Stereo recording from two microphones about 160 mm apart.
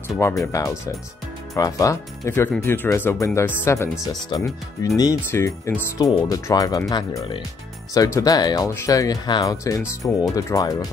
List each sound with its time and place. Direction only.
0.4 s speech: 20° left (ahead or behind)
5.9 s speech: 25° left (ahead or behind)